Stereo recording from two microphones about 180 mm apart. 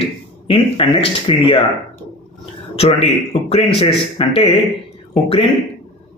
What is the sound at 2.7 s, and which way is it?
A man's voice, 35° left (ahead or behind).